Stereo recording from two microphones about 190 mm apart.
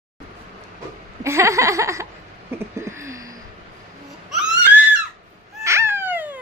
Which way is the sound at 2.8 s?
15° right (ahead or behind).